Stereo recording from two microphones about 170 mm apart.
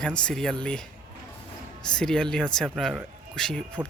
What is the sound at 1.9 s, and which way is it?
Speech, 5° left (ahead or behind).